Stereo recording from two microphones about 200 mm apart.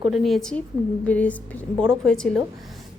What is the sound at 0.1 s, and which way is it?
A woman's voice, centre (ahead or behind).